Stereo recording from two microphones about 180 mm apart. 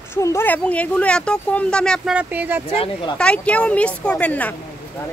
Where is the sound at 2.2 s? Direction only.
10° right (ahead or behind).